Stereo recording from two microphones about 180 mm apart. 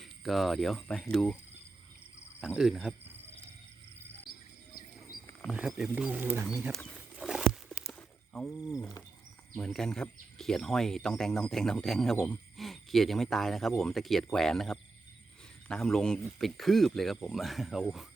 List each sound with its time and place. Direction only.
0.0 s speech: centre (ahead or behind)
2.4 s speech: centre (ahead or behind)
5.4 s speech: centre (ahead or behind)
6.7 s wild animals: centre (ahead or behind)
7.9 s a sound: 5° left (ahead or behind)
9.6 s speech: centre (ahead or behind)